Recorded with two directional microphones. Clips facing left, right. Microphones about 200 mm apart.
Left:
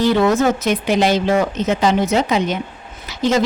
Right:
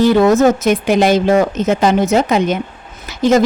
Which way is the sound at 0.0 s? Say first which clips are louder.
Right 5 dB; 45° right (ahead or behind).